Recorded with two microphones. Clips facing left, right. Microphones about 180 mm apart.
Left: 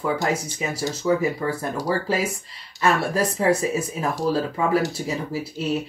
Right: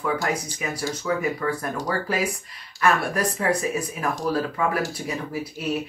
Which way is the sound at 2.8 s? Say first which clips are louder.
Left 1 dB; 25° left (ahead or behind).